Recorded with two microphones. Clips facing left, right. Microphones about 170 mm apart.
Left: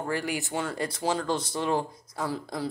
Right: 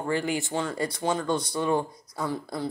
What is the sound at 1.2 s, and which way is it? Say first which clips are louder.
Speech: right 2 dB; 25° left (ahead or behind).